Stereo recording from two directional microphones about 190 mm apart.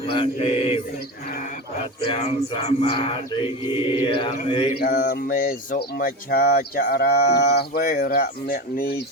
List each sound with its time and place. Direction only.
0.1 s music: 30° left (ahead or behind)
2.0 s music: 35° left (ahead or behind)
3.7 s mantra: 25° left (ahead or behind)
4.8 s speech: 50° left (ahead or behind)